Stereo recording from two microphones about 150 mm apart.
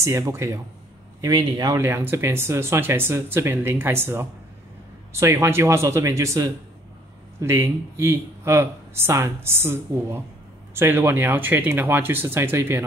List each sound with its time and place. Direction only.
0.0 s speech: 20° right (ahead or behind)